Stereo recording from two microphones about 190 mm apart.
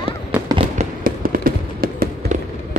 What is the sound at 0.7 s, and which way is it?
Fireworks, 50° right (ahead or behind).